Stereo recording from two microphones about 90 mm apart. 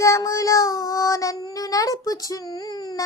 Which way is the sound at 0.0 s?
35° left (ahead or behind).